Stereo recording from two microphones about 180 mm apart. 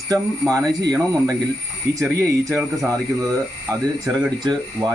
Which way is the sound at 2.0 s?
15° right (ahead or behind).